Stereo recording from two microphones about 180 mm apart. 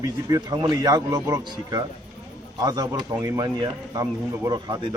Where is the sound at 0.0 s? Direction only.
20° right (ahead or behind).